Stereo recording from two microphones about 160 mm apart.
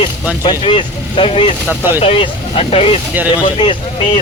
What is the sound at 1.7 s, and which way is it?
Speech, 10° right (ahead or behind).